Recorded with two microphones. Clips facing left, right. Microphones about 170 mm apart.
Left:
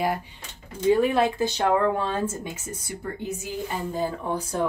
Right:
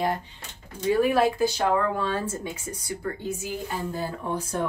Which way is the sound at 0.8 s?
20° left (ahead or behind).